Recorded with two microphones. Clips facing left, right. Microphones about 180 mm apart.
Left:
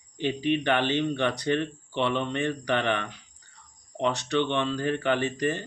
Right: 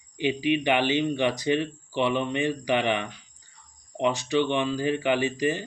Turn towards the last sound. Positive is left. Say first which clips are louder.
# right 2 dB
turn(degrees=-10)  # may be behind; listen again after turning